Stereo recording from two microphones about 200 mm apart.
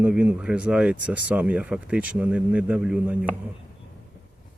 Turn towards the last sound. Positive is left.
turn(degrees=-5)  # may be behind; listen again after turning